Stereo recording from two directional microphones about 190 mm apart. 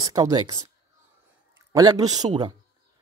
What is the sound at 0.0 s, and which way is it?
Speech, 20° right (ahead or behind).